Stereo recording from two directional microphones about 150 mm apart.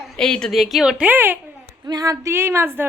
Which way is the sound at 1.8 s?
25° right (ahead or behind).